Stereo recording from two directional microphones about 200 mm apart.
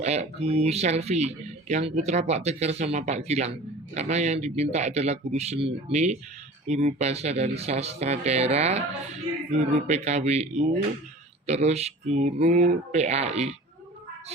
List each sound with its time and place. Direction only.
0.0 s speech: 35° right (ahead or behind)